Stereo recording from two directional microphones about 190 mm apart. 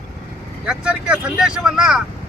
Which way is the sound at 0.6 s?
5° right (ahead or behind).